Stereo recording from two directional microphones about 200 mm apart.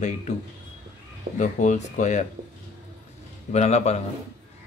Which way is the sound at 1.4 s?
40° left (ahead or behind).